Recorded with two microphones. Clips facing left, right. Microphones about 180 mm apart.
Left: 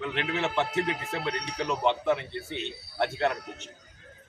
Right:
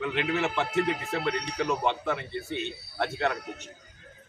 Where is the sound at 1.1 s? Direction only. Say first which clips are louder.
Right 3 dB; 20° left (ahead or behind).